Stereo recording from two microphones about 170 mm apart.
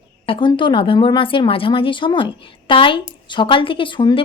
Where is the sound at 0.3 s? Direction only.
30° left (ahead or behind).